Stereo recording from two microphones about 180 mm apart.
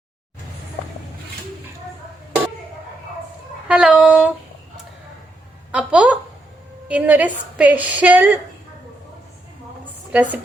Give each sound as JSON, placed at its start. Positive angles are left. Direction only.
{"t": 3.7, "sound": "a sound", "side_deg": -5}
{"t": 5.7, "sound": "a woman's voice", "side_deg": -5}
{"t": 10.1, "sound": "speech", "side_deg": -10}